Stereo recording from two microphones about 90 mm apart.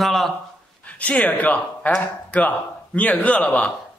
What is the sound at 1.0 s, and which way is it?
Speech, 15° left (ahead or behind).